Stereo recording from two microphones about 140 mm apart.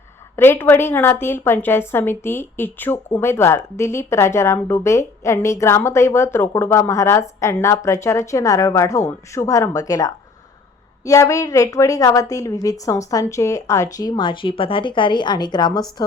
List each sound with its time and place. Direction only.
0.3 s a woman's voice: 15° left (ahead or behind)